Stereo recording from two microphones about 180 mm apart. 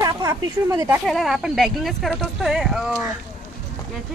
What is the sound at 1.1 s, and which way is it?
Speech, centre (ahead or behind).